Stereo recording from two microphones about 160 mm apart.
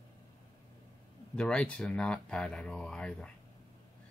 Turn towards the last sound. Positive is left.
turn(degrees=5)  # may be behind; listen again after turning